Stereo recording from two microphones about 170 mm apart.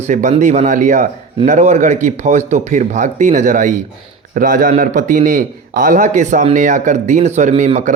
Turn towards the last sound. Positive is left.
turn(degrees=-45)  # may be behind; listen again after turning